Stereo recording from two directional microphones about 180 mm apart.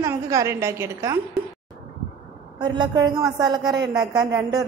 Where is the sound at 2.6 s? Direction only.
25° right (ahead or behind).